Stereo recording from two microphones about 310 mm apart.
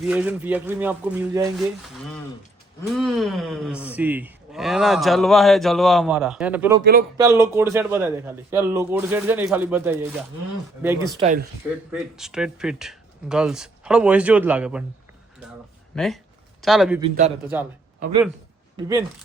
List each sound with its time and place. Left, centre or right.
0.0 s speech: centre
2.9 s a man's voice: centre
11.2 s a man's voice: right
11.9 s speech: centre
16.0 s a sound: centre
17.0 s a man's voice: right
17.5 s speech: centre
18.8 s a man's voice: centre